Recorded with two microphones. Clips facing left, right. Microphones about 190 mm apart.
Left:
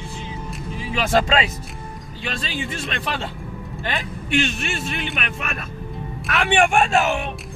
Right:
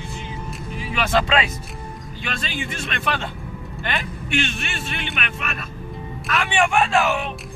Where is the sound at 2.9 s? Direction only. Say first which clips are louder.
Right 4 dB; 35° left (ahead or behind).